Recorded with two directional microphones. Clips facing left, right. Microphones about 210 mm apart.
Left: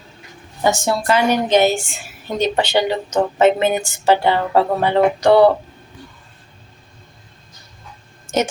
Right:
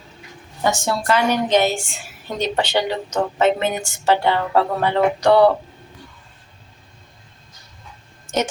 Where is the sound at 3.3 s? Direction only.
5° left (ahead or behind).